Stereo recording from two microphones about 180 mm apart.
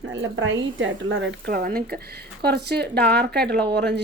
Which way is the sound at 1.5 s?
55° right (ahead or behind).